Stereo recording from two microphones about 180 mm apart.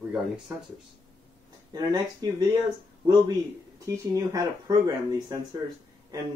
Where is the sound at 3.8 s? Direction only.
20° right (ahead or behind).